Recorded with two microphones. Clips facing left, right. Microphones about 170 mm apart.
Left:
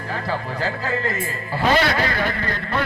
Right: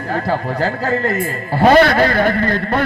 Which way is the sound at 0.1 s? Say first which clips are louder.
Right 7 dB; 45° right (ahead or behind).